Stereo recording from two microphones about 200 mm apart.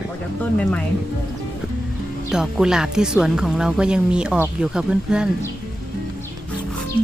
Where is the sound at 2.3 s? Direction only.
5° right (ahead or behind).